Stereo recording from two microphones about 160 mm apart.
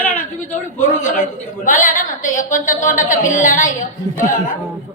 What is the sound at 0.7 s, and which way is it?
A woman's voice, 50° left (ahead or behind).